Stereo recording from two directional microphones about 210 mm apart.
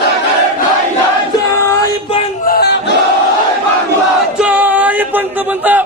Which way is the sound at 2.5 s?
50° left (ahead or behind).